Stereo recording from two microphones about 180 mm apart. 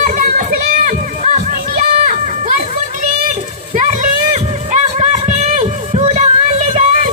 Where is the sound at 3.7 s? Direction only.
45° right (ahead or behind).